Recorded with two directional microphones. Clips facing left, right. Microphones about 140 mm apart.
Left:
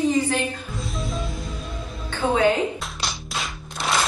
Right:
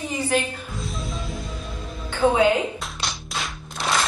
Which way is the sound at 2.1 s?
15° right (ahead or behind).